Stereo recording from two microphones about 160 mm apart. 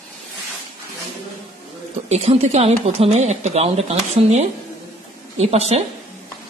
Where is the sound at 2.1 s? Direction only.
40° right (ahead or behind).